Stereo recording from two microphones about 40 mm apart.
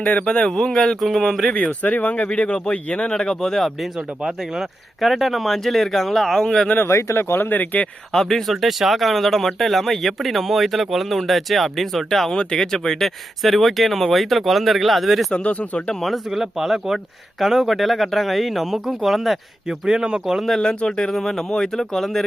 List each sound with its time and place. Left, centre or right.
0.0 s speech: left
0.8 s speech: centre
1.5 s speech: left; by 3.7 s centre
4.2 s speech: centre
4.9 s speech: centre
6.7 s speech: left
7.5 s speech: left
8.1 s speech: centre
8.6 s speech: centre
12.3 s speech: centre
15.3 s speech: left
16.0 s speech: centre
19.6 s speech: centre
20.6 s speech: left